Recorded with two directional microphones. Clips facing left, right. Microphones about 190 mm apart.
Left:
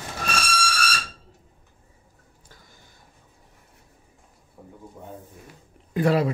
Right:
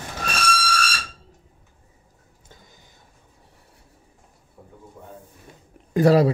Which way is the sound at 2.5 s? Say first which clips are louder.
Right 3 dB; 20° right (ahead or behind).